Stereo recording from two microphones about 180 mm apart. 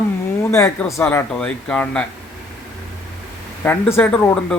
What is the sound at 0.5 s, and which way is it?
Speech, 15° left (ahead or behind).